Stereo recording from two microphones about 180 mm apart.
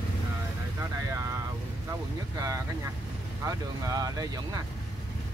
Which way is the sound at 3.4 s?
20° right (ahead or behind).